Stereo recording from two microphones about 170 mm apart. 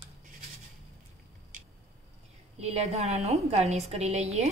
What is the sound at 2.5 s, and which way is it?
A woman's voice, 40° right (ahead or behind).